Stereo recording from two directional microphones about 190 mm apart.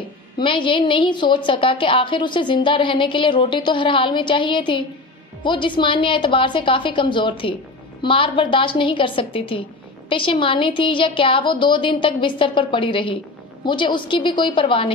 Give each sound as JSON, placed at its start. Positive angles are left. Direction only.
{"t": 0.4, "sound": "a woman's voice", "side_deg": 25}